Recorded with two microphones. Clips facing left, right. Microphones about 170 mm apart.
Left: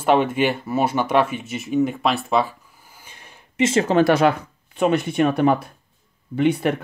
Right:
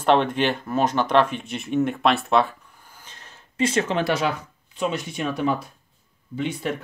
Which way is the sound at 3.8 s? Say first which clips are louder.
Left 7 dB; 45° left (ahead or behind).